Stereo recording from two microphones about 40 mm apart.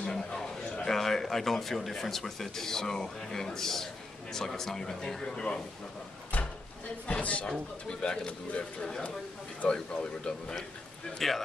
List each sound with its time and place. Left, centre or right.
0.0 s speech: centre
6.3 s a sound: left
7.1 s speech: left
7.4 s speech: left
8.3 s speech: left
9.6 s speech: left
11.1 s speech: centre